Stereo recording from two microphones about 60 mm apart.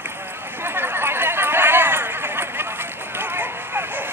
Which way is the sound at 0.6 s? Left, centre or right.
Right.